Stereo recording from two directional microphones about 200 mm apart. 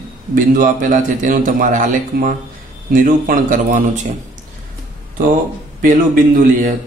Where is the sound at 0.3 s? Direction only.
40° right (ahead or behind).